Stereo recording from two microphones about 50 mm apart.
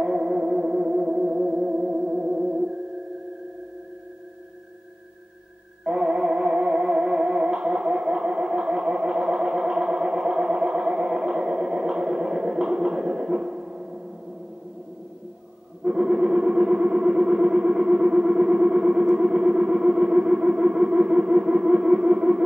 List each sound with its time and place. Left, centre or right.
0.0 s music: centre
5.9 s music: centre
15.8 s organ: centre